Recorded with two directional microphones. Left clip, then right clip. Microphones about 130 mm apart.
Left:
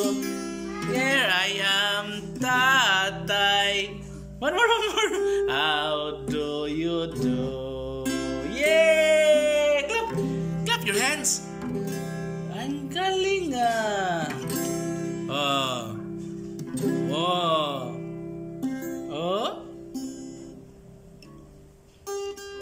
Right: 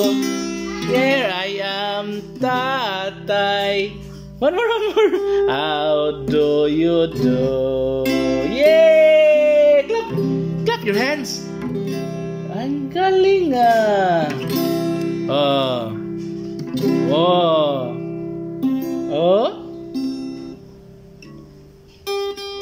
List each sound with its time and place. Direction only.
0.4 s music: 15° right (ahead or behind)
9.2 s music: 20° right (ahead or behind)
9.5 s a sound: 40° right (ahead or behind)
10.0 s music: 35° right (ahead or behind)
16.7 s music: 20° right (ahead or behind)
17.0 s music: 40° right (ahead or behind)
18.6 s music: 5° right (ahead or behind)
19.0 s music: 35° right (ahead or behind)